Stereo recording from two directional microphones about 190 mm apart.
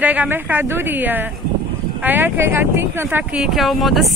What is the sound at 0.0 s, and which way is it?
Speech, 10° right (ahead or behind).